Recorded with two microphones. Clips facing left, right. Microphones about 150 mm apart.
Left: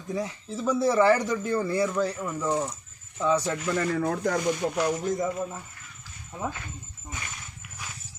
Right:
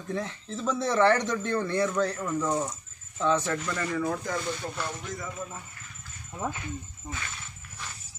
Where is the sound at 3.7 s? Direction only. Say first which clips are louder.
Left 3 dB; 50° left (ahead or behind).